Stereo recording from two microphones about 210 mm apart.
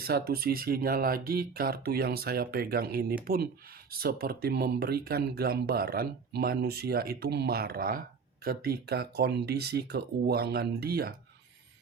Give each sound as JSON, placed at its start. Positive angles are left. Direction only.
{"t": 0.0, "sound": "speech", "side_deg": -45}